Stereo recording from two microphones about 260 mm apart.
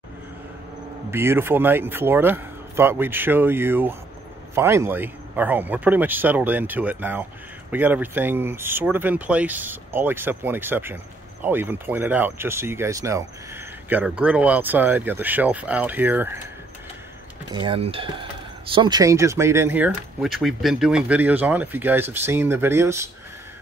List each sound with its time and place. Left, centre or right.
1.1 s speech: centre
17.5 s speech: centre